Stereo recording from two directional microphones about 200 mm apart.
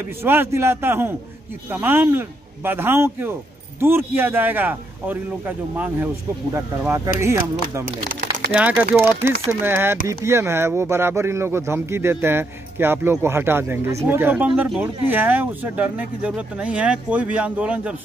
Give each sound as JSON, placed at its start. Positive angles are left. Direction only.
{"t": 0.2, "sound": "speech", "side_deg": -10}
{"t": 6.5, "sound": "speech", "side_deg": -10}